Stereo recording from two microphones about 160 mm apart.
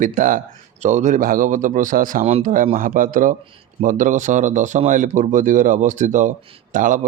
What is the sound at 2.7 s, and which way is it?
Speech, 55° right (ahead or behind).